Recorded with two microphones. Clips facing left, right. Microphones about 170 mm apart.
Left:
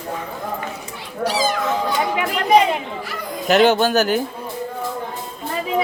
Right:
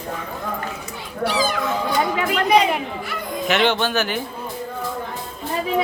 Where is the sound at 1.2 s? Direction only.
40° left (ahead or behind).